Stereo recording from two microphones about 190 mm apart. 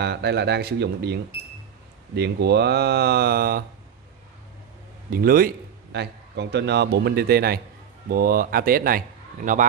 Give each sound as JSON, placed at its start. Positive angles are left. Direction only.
{"t": 0.0, "sound": "speech", "side_deg": -60}
{"t": 5.1, "sound": "a man's voice", "side_deg": -50}